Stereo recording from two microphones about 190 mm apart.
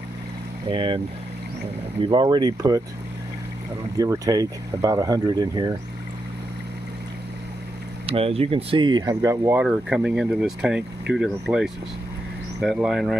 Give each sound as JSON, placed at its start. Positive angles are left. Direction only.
{"t": 0.7, "sound": "speech", "side_deg": -25}
{"t": 4.0, "sound": "speech", "side_deg": -20}
{"t": 8.1, "sound": "speech", "side_deg": -30}